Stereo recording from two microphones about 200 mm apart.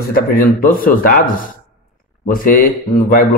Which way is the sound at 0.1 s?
45° left (ahead or behind).